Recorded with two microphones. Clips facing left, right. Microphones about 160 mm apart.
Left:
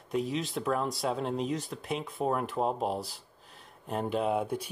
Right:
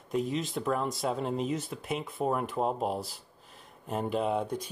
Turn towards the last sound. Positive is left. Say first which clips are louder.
# even
turn(degrees=5)  # may be behind; listen again after turning